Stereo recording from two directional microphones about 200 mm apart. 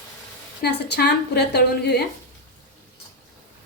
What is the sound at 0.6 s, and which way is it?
A woman's voice, 55° left (ahead or behind).